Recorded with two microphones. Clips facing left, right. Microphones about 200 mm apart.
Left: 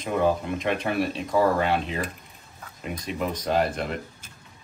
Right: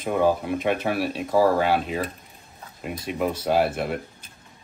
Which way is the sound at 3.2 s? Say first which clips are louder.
Right 3 dB; 5° right (ahead or behind).